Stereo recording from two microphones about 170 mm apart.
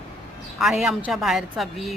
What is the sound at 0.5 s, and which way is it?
A woman's voice, 5° right (ahead or behind).